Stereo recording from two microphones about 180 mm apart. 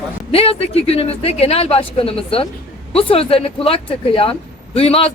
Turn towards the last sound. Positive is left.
turn(degrees=30)  # may be behind; listen again after turning